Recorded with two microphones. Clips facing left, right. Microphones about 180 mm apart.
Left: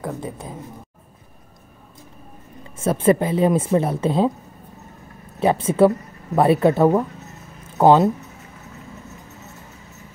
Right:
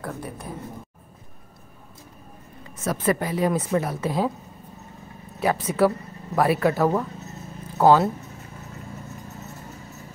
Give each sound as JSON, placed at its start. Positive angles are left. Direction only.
{"t": 0.0, "sound": "speech", "side_deg": 20}
{"t": 2.7, "sound": "speech", "side_deg": 25}
{"t": 5.4, "sound": "speech", "side_deg": 25}
{"t": 7.6, "sound": "a sound", "side_deg": 20}